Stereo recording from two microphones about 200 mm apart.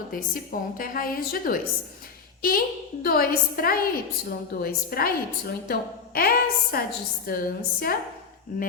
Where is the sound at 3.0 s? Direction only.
50° left (ahead or behind).